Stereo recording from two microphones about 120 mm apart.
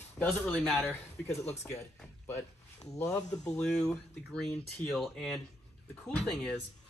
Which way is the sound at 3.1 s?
5° left (ahead or behind).